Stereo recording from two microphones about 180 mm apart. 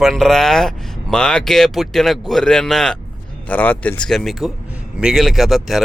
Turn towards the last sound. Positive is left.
turn(degrees=0)  # may be behind; listen again after turning